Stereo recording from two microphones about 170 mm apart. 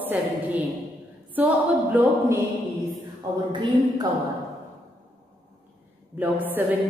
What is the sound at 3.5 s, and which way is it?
Speech, 25° right (ahead or behind).